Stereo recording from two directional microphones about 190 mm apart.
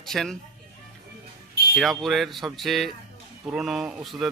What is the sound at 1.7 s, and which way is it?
Speech, centre (ahead or behind).